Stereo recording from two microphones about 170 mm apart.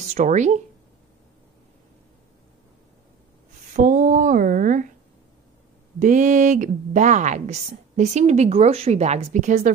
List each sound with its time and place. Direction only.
0.1 s a woman's voice: 45° right (ahead or behind)
3.7 s a woman's voice: 50° right (ahead or behind)
5.9 s a woman's voice: 50° right (ahead or behind)